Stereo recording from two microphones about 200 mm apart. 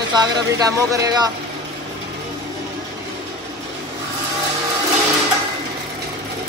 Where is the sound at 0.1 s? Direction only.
20° right (ahead or behind).